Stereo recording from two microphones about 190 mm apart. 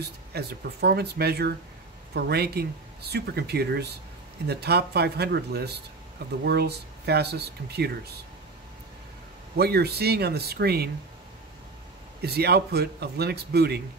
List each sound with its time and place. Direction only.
0.3 s speech: 60° right (ahead or behind)
9.6 s speech: 55° right (ahead or behind)
12.2 s speech: 55° right (ahead or behind)